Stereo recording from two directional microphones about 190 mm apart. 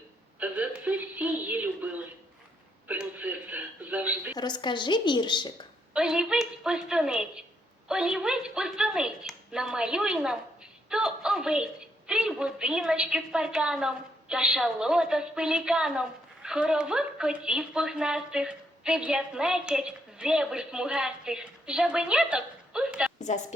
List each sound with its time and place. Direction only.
0.3 s speech: 10° right (ahead or behind)
2.8 s a sound: 10° right (ahead or behind)
4.4 s a woman's voice: 20° left (ahead or behind)
5.9 s a woman's voice: 5° right (ahead or behind)
23.2 s a woman's voice: 35° left (ahead or behind)